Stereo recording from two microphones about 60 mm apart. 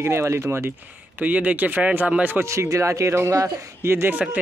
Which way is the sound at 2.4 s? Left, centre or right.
Right.